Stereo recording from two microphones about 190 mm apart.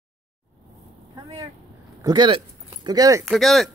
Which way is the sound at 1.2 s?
20° right (ahead or behind).